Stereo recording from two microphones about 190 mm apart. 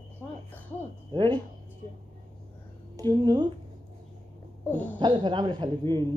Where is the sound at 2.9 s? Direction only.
20° right (ahead or behind).